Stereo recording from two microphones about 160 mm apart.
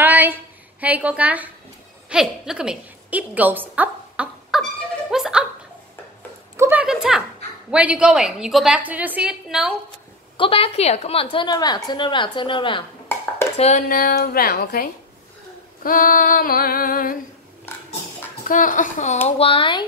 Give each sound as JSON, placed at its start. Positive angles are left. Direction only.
{"t": 0.0, "sound": "a sound", "side_deg": -10}
{"t": 2.0, "sound": "a woman's voice", "side_deg": -5}
{"t": 5.1, "sound": "a sound", "side_deg": -5}
{"t": 6.5, "sound": "a sound", "side_deg": -15}
{"t": 7.7, "sound": "a woman's voice", "side_deg": -5}
{"t": 10.3, "sound": "a woman's voice", "side_deg": 35}
{"t": 13.6, "sound": "speech", "side_deg": 45}
{"t": 13.8, "sound": "a woman's voice", "side_deg": 65}
{"t": 15.8, "sound": "female singing", "side_deg": 60}
{"t": 17.7, "sound": "a sound", "side_deg": 15}
{"t": 18.4, "sound": "female singing", "side_deg": 55}
{"t": 19.2, "sound": "a woman's voice", "side_deg": 35}